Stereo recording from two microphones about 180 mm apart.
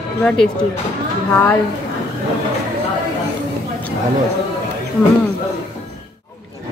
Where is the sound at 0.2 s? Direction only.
10° left (ahead or behind).